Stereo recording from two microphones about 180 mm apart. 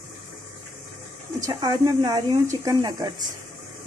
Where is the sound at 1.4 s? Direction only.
20° right (ahead or behind).